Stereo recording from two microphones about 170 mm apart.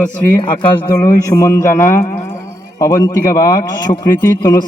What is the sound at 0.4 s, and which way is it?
A man's voice, 25° left (ahead or behind).